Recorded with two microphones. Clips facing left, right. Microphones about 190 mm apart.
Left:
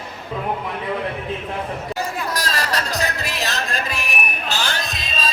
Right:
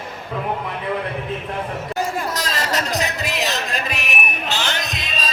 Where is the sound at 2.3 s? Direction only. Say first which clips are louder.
Right 1 dB; 20° right (ahead or behind).